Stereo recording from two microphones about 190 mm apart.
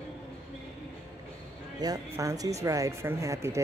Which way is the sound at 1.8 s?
20° right (ahead or behind).